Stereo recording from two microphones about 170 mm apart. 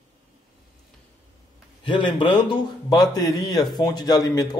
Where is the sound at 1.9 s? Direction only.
30° left (ahead or behind).